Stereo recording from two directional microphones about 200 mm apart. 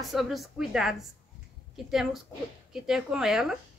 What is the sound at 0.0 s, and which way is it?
A woman's voice, centre (ahead or behind).